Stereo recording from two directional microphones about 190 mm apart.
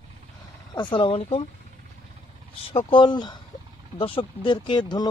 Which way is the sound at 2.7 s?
25° left (ahead or behind).